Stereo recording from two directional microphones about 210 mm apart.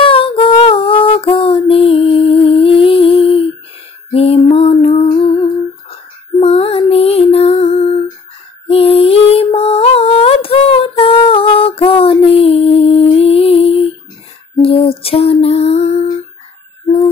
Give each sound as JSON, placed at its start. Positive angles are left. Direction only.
{"t": 0.0, "sound": "female singing", "side_deg": 25}
{"t": 4.1, "sound": "music", "side_deg": 30}
{"t": 6.4, "sound": "music", "side_deg": 30}
{"t": 8.6, "sound": "a sound", "side_deg": 30}
{"t": 14.6, "sound": "lullaby", "side_deg": 25}